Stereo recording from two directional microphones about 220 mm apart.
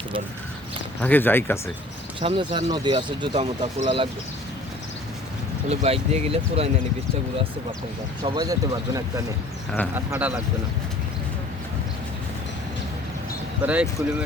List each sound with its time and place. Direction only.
1.0 s speech: 10° left (ahead or behind)
2.2 s speech: 20° right (ahead or behind)
5.6 s speech: 30° right (ahead or behind)
8.2 s speech: 20° right (ahead or behind)
13.6 s speech: 5° right (ahead or behind)